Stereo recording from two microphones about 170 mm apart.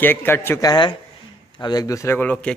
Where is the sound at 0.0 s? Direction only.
10° left (ahead or behind).